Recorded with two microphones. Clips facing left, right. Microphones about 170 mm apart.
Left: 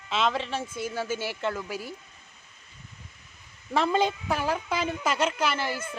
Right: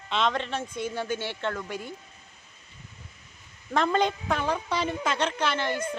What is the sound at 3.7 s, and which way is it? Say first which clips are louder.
A woman's voice: even; 5° left (ahead or behind).